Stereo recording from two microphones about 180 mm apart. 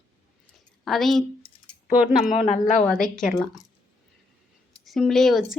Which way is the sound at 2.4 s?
35° left (ahead or behind).